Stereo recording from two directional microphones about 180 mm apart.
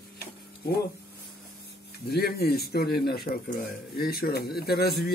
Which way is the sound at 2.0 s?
60° left (ahead or behind).